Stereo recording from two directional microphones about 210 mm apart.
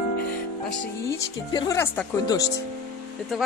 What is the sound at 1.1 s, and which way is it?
Speech, 15° left (ahead or behind).